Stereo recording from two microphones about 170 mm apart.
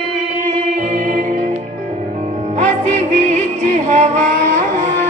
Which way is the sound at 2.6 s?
40° right (ahead or behind).